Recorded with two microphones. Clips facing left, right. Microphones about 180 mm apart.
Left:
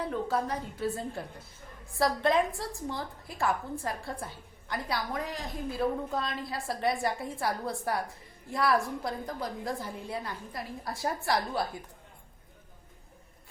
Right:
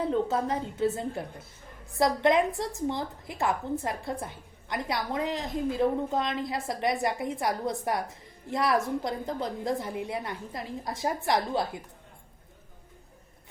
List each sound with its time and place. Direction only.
0.0 s a woman's voice: 25° right (ahead or behind)